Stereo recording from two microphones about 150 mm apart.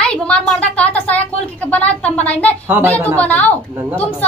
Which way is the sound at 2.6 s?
15° right (ahead or behind).